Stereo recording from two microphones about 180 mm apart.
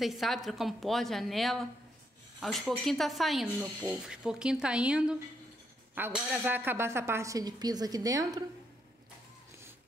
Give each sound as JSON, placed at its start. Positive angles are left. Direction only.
{"t": 0.0, "sound": "a woman's voice", "side_deg": 0}